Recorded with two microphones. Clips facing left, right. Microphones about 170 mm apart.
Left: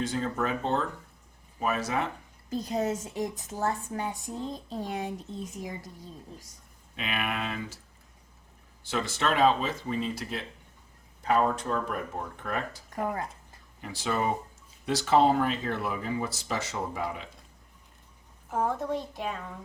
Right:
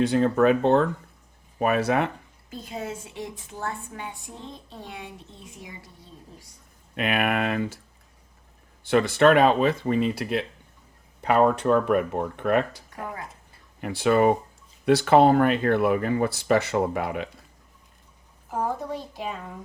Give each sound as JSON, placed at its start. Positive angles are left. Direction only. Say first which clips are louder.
{"t": 0.0, "sound": "speech", "louder": "right 10 dB", "side_deg": -65}
{"t": 2.5, "sound": "a woman's voice", "louder": "left 5 dB", "side_deg": 40}
{"t": 6.9, "sound": "speech", "louder": "right 8 dB", "side_deg": -60}
{"t": 8.8, "sound": "speech", "louder": "right 11 dB", "side_deg": -60}
{"t": 13.8, "sound": "speech", "louder": "right 10 dB", "side_deg": -65}
{"t": 18.5, "sound": "speech", "louder": "even", "side_deg": 0}